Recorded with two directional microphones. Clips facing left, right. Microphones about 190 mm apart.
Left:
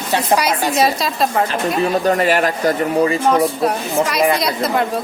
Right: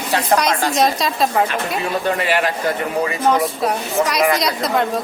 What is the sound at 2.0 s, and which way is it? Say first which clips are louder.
Speech: left 4 dB; 40° left (ahead or behind).